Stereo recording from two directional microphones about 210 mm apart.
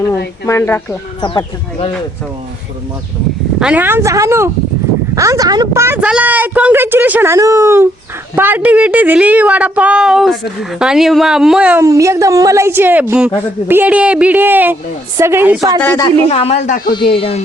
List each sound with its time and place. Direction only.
0.4 s speech: 15° left (ahead or behind)
1.2 s speech: 25° left (ahead or behind)
3.6 s a woman's voice: 5° right (ahead or behind)
15.8 s speech: 10° left (ahead or behind)
16.0 s speech: 30° left (ahead or behind)
16.9 s speech: 25° left (ahead or behind)